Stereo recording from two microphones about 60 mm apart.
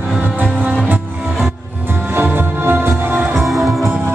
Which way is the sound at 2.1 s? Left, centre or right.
Right.